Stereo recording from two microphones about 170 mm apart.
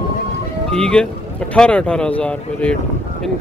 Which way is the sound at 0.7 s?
5° left (ahead or behind).